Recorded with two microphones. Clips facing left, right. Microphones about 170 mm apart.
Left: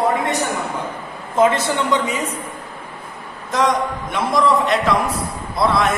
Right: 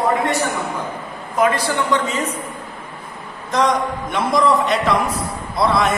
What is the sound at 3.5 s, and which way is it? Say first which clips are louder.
A man's voice: even; centre (ahead or behind).